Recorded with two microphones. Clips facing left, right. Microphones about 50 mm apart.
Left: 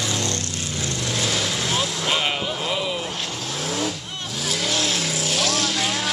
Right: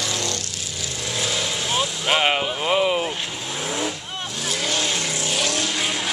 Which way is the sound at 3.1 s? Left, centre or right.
Centre.